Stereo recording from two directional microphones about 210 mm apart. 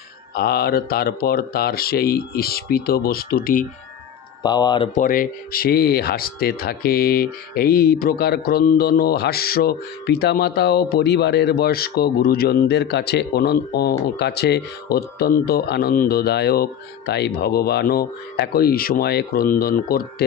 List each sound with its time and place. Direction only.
0.3 s speech: 50° left (ahead or behind)
4.4 s speech: 20° left (ahead or behind)
4.9 s speech: 40° left (ahead or behind)